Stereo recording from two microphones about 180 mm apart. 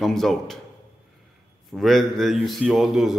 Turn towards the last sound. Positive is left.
turn(degrees=0)  # may be behind; listen again after turning